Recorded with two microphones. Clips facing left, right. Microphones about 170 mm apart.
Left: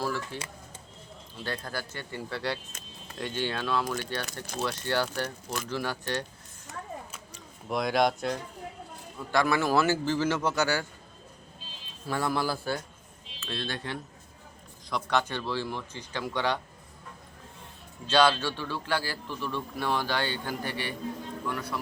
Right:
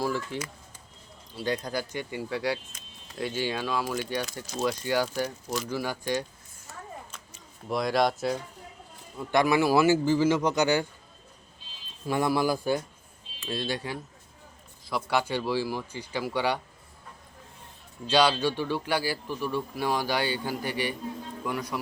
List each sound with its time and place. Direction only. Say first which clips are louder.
0.0 s a man's voice: right 3 dB; 15° right (ahead or behind)
1.4 s a man's voice: right 5 dB; 15° right (ahead or behind)
7.7 s speech: right 1 dB; centre (ahead or behind)
9.3 s a man's voice: right 3 dB; 15° right (ahead or behind)
12.0 s a man's voice: right 4 dB; 15° right (ahead or behind)
18.1 s a man's voice: right 1 dB; 15° right (ahead or behind)